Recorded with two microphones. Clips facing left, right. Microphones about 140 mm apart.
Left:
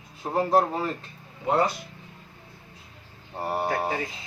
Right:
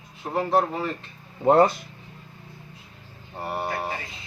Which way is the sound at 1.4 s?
45° right (ahead or behind).